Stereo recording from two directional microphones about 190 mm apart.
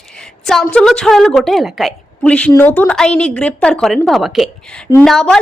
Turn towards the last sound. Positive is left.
turn(degrees=5)  # may be behind; listen again after turning